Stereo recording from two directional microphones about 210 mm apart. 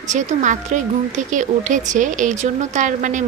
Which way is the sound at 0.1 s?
35° right (ahead or behind).